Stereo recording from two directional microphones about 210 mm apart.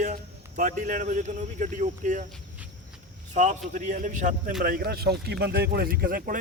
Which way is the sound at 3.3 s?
35° right (ahead or behind).